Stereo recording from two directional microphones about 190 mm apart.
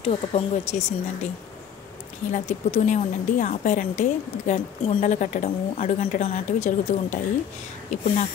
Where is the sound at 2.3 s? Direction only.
40° left (ahead or behind).